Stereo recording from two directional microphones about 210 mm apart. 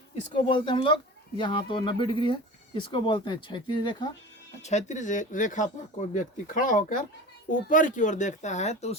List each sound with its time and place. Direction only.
0.3 s speech: 25° left (ahead or behind)
4.6 s speech: 35° left (ahead or behind)